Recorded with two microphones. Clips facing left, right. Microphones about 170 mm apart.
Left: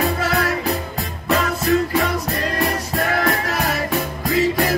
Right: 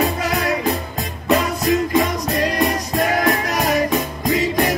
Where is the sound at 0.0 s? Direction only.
15° right (ahead or behind).